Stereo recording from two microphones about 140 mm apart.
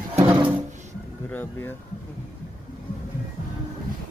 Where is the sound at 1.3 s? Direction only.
15° left (ahead or behind).